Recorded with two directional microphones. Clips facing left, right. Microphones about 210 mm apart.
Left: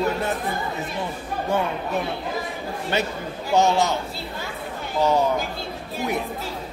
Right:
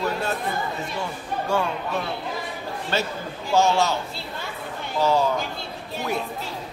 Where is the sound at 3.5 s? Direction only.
20° left (ahead or behind).